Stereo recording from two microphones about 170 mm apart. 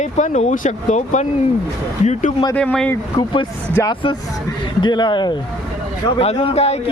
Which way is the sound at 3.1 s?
25° left (ahead or behind).